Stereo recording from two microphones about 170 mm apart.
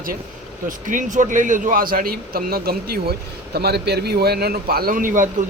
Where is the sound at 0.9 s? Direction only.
50° right (ahead or behind).